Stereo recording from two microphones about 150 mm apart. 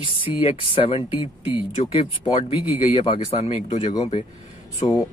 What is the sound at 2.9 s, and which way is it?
Speech, 35° left (ahead or behind).